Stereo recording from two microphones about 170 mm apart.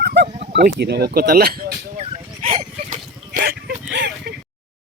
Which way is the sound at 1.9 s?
35° right (ahead or behind).